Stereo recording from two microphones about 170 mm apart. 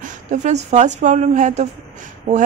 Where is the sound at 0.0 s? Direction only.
45° right (ahead or behind).